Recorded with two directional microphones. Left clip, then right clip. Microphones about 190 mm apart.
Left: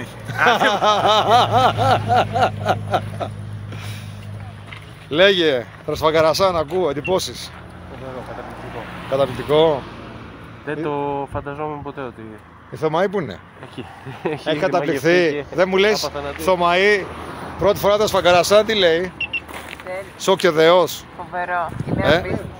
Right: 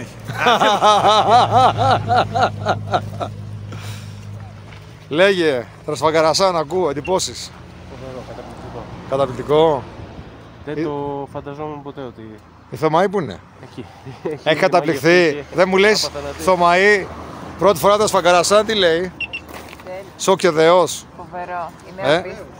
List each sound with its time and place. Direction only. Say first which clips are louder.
0.0 s speech: left 1 dB; 15° right (ahead or behind)
5.1 s speech: even; 10° right (ahead or behind)
9.1 s speech: right 1 dB; 5° right (ahead or behind)
10.7 s speech: left 1 dB; 10° left (ahead or behind)
12.7 s speech: right 4 dB; 30° right (ahead or behind)
13.0 s speech: right 2 dB; 15° right (ahead or behind)
14.4 s speech: right 5 dB; 30° right (ahead or behind)
17.6 s speech: right 3 dB; 30° right (ahead or behind); by 19.1 s 10° right (ahead or behind)
19.1 s a sound: left 2 dB; 55° right (ahead or behind)
20.2 s speech: right 1 dB; 15° right (ahead or behind)
21.3 s speech: left 4 dB; centre (ahead or behind)
22.0 s speech: even; 10° right (ahead or behind)